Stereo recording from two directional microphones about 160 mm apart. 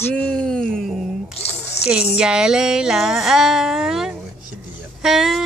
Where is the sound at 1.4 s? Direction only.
40° left (ahead or behind).